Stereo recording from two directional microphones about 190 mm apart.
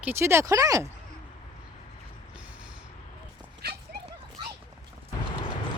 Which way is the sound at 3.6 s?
55° right (ahead or behind).